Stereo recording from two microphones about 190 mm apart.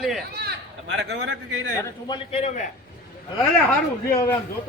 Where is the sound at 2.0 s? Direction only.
30° left (ahead or behind).